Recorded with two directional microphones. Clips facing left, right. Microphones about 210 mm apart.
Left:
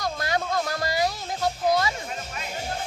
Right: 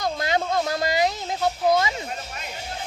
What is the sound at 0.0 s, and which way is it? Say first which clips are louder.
Music: right 3 dB; 20° right (ahead or behind).